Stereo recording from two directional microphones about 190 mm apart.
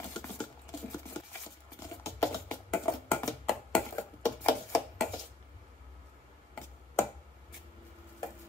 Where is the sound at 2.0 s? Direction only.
10° left (ahead or behind).